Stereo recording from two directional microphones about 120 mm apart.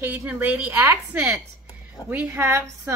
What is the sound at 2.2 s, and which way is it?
Speech, 25° right (ahead or behind).